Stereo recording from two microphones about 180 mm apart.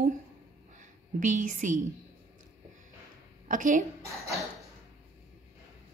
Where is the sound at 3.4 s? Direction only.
45° right (ahead or behind).